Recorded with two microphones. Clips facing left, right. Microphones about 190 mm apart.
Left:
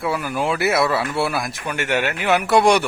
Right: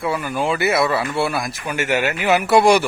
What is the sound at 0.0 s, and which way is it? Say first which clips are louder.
Speech: right 1 dB; centre (ahead or behind).